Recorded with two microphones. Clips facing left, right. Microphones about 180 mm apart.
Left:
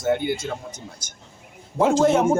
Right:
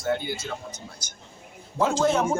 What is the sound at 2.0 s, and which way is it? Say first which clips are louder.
Speech: left 4 dB; 25° left (ahead or behind).